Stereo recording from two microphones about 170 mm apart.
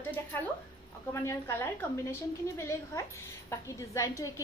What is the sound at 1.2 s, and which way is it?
A woman's voice, 15° left (ahead or behind).